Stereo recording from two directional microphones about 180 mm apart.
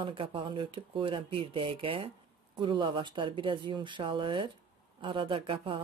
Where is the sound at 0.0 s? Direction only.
30° right (ahead or behind).